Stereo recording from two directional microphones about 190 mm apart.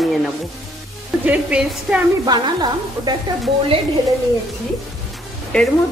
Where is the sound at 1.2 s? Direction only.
5° right (ahead or behind).